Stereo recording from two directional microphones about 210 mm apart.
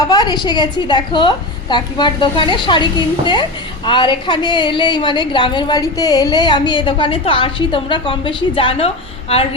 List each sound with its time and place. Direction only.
0.1 s a woman's voice: 20° left (ahead or behind)